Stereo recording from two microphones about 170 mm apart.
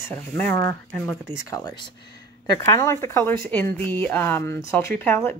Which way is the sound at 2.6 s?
15° left (ahead or behind).